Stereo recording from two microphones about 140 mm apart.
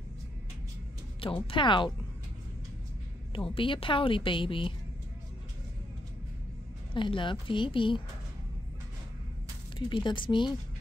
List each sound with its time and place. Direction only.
1.5 s a woman's voice: 35° left (ahead or behind)
3.3 s a woman's voice: 40° left (ahead or behind)
6.9 s a woman's voice: 35° left (ahead or behind)
9.8 s a woman's voice: 35° left (ahead or behind)